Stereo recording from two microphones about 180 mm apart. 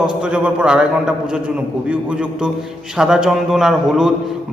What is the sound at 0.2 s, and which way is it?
A man's voice, 5° right (ahead or behind).